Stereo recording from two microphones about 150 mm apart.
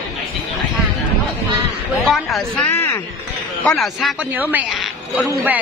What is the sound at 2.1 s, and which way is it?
Speech, centre (ahead or behind).